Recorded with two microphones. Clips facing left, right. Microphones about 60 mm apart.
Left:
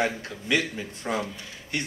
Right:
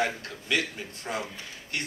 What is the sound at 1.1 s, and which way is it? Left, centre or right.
Speech, left.